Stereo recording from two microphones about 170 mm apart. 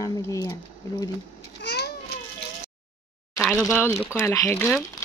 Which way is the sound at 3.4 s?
Centre (ahead or behind).